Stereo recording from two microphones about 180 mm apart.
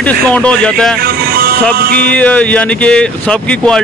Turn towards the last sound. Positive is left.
turn(degrees=5)  # may be behind; listen again after turning